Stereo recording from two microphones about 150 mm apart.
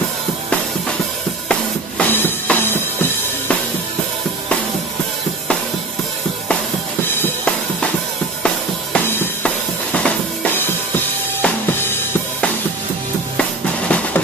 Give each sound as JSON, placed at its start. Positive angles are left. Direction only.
{"t": 1.5, "sound": "music", "side_deg": 10}
{"t": 7.1, "sound": "drum kit", "side_deg": 10}
{"t": 8.9, "sound": "drum", "side_deg": 15}
{"t": 9.9, "sound": "drum kit", "side_deg": 10}
{"t": 13.4, "sound": "drum", "side_deg": 10}